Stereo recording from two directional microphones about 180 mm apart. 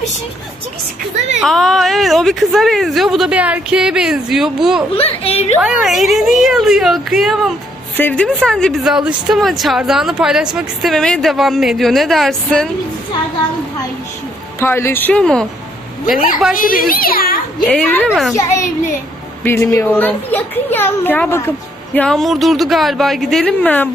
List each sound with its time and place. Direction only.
1.4 s a woman's voice: centre (ahead or behind)
4.9 s a woman's voice: 30° left (ahead or behind)
5.6 s a woman's voice: centre (ahead or behind)
7.9 s a woman's voice: 10° left (ahead or behind)
14.6 s a child's voice: 15° left (ahead or behind)
16.5 s a child's voice: 50° left (ahead or behind)
17.6 s a woman's voice: 5° left (ahead or behind)
19.4 s a child's voice: 15° left (ahead or behind)